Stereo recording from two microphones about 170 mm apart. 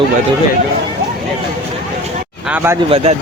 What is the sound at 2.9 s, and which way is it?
Speech, 35° right (ahead or behind).